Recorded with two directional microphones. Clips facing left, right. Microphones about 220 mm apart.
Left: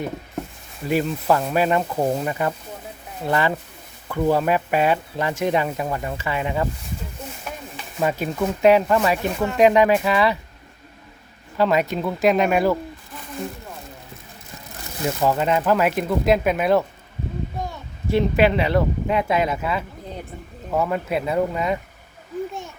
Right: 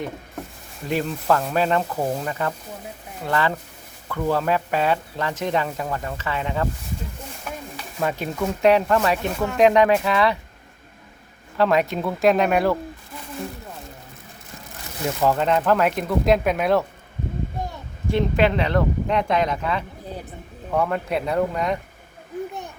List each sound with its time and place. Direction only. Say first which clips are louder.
0.9 s speech: left 2 dB; 10° left (ahead or behind)
7.9 s speech: left 2 dB; 5° left (ahead or behind)
11.5 s speech: even; centre (ahead or behind)
15.0 s speech: even; 5° left (ahead or behind)
18.1 s speech: left 2 dB; 5° left (ahead or behind)